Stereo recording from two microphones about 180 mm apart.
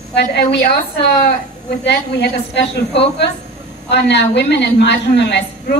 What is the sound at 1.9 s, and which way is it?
A woman's voice, 70° left (ahead or behind).